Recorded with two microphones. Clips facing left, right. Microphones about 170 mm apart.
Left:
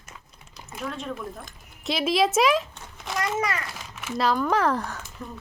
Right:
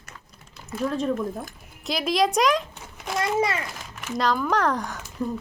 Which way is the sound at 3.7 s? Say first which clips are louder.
Even; 5° left (ahead or behind).